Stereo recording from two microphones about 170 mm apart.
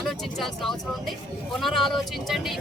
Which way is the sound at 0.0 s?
Centre (ahead or behind).